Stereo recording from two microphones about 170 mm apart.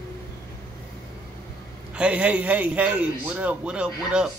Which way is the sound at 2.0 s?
5° right (ahead or behind).